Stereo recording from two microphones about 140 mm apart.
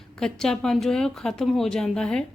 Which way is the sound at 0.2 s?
5° left (ahead or behind).